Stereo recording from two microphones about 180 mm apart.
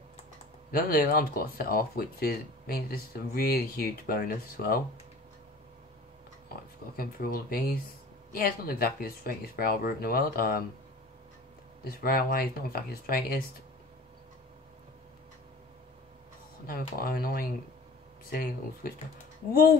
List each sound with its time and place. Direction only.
0.7 s speech: 55° left (ahead or behind)
7.0 s speech: 55° left (ahead or behind)
11.8 s speech: 55° left (ahead or behind)
16.6 s speech: 55° left (ahead or behind)